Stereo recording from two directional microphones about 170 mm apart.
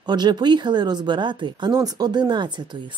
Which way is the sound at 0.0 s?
25° right (ahead or behind).